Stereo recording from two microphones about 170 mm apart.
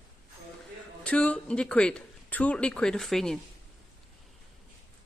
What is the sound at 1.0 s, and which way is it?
Speech, 5° left (ahead or behind).